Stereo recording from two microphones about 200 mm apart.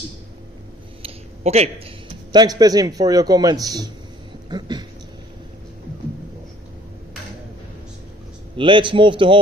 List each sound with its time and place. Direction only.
1.0 s a sound: 30° right (ahead or behind)
2.3 s a man's voice: 20° right (ahead or behind)
8.5 s a man's voice: 25° right (ahead or behind)